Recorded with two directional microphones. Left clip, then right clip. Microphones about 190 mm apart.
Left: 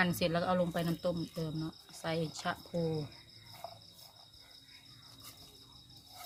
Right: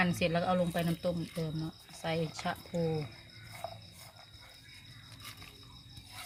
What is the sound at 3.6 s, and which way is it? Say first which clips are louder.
Cricket: right 5 dB; 20° right (ahead or behind).